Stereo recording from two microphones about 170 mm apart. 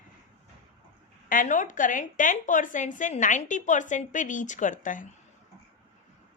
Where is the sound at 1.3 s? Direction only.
50° left (ahead or behind).